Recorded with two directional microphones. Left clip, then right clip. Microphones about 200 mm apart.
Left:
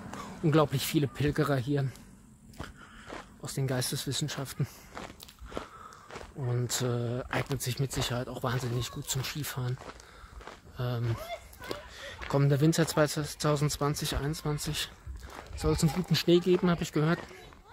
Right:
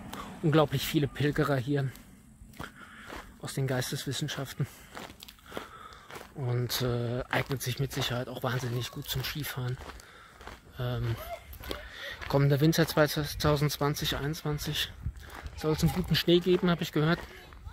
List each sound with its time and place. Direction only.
0.2 s speech: 5° right (ahead or behind)
3.4 s speech: 10° right (ahead or behind)
4.9 s biting: 50° right (ahead or behind)
6.4 s speech: 5° right (ahead or behind)
10.8 s speech: centre (ahead or behind)
12.3 s speech: 10° right (ahead or behind)